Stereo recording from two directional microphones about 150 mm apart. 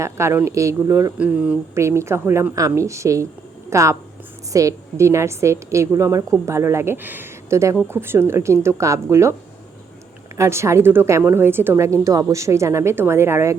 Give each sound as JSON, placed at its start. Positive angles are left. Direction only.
{"t": 0.0, "sound": "a woman's voice", "side_deg": -20}
{"t": 10.3, "sound": "a woman's voice", "side_deg": -20}